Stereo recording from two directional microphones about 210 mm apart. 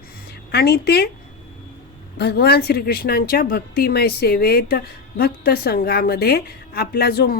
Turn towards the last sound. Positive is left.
turn(degrees=50)  # may be behind; listen again after turning